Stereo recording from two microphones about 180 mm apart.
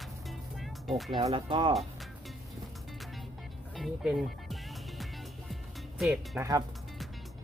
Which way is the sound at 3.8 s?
Centre (ahead or behind).